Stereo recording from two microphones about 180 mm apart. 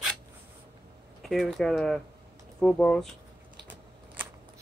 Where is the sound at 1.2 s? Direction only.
Centre (ahead or behind).